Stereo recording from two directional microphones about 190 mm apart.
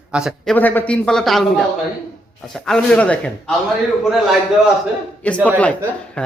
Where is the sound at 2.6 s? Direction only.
5° left (ahead or behind).